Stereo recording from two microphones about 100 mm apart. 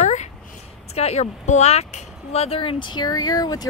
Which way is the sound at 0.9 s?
90° left.